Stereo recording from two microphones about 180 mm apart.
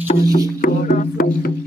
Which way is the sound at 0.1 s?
50° left (ahead or behind).